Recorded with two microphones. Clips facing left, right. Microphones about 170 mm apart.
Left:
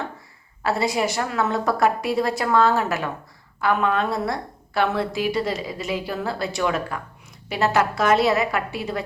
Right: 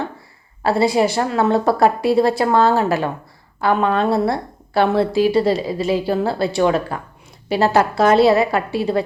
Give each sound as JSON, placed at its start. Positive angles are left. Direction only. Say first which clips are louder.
{"t": 0.6, "sound": "a woman's voice", "louder": "right 6 dB", "side_deg": -30}